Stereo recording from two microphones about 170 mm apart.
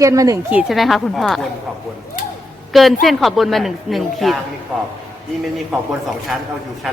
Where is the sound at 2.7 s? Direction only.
Centre (ahead or behind).